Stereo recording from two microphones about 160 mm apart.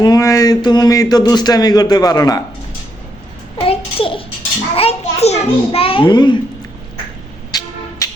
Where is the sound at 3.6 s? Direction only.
35° left (ahead or behind).